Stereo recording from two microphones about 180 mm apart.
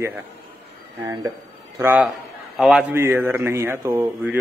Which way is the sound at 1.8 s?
10° right (ahead or behind).